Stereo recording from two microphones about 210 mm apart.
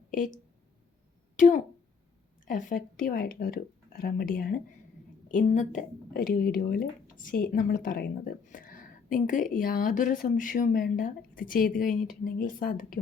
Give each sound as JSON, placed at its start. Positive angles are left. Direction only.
{"t": 1.4, "sound": "speech", "side_deg": 35}